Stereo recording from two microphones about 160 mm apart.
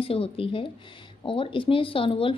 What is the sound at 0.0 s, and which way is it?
Speech, 35° left (ahead or behind).